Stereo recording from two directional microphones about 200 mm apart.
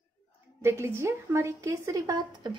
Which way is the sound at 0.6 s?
10° right (ahead or behind).